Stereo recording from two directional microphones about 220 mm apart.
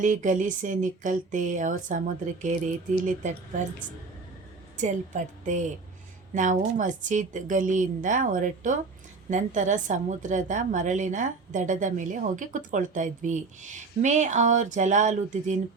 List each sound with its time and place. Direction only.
0.0 s a woman's voice: 35° right (ahead or behind)
4.8 s a woman's voice: 35° right (ahead or behind)